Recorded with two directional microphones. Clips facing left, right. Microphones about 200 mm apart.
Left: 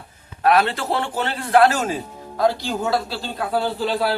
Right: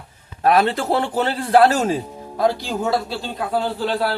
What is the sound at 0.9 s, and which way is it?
Speech, 35° right (ahead or behind).